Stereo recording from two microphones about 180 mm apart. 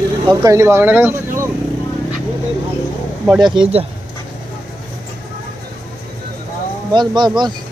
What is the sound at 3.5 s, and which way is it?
Speech, 30° right (ahead or behind).